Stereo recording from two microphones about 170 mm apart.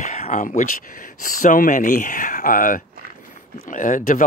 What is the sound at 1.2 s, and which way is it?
Speech, 50° left (ahead or behind).